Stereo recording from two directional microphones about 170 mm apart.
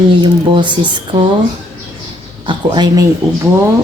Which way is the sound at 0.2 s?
25° right (ahead or behind).